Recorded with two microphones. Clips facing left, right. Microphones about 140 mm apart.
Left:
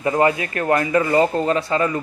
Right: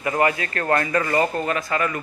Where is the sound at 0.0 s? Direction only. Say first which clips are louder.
Left 3 dB; 25° left (ahead or behind).